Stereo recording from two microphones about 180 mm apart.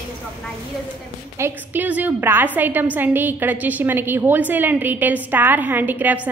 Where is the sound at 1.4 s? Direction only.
10° right (ahead or behind).